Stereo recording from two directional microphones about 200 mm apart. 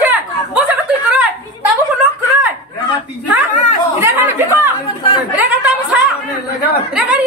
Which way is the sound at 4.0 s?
10° right (ahead or behind).